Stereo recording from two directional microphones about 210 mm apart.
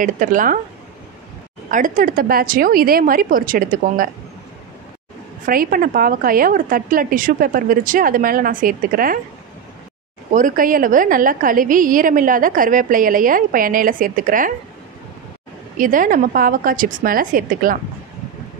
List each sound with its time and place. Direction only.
0.0 s a woman's voice: 40° right (ahead or behind)
1.7 s a woman's voice: 40° right (ahead or behind)
5.4 s a woman's voice: 45° right (ahead or behind)
10.3 s a woman's voice: 40° right (ahead or behind)
15.8 s a woman's voice: 40° right (ahead or behind)